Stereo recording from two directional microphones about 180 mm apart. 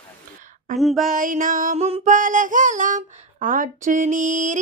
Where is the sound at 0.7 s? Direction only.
Centre (ahead or behind).